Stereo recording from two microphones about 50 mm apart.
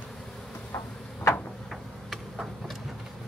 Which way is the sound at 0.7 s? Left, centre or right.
Left.